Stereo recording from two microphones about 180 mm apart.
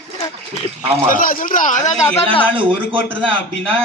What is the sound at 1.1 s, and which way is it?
Speech, 50° left (ahead or behind).